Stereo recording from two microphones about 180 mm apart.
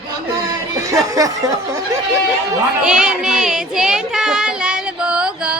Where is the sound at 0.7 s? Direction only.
20° right (ahead or behind).